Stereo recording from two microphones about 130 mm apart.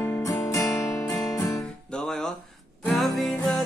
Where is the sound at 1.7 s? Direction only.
5° left (ahead or behind).